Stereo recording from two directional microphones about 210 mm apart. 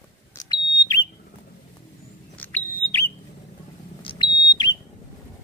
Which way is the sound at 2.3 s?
10° left (ahead or behind).